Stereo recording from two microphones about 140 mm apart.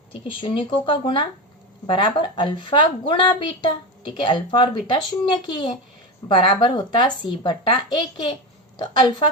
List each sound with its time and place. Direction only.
0.1 s a woman's voice: 40° left (ahead or behind)